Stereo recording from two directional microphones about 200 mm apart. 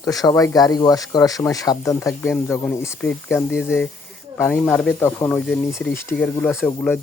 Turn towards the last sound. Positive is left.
turn(degrees=10)  # may be behind; listen again after turning